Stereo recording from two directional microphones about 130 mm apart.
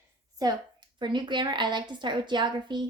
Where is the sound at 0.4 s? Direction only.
30° right (ahead or behind).